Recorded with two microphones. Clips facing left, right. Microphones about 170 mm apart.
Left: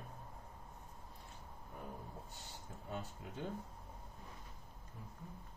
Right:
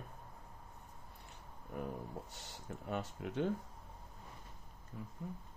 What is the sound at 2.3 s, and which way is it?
Speech, 85° right.